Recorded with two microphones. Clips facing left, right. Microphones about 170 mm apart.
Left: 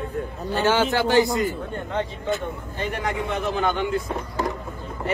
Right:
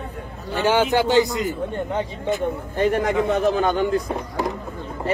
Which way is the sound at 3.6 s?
40° right (ahead or behind).